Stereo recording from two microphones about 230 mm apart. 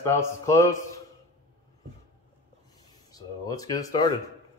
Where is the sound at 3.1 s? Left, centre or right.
Centre.